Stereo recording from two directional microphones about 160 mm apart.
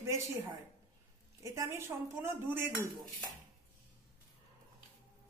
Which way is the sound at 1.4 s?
20° right (ahead or behind).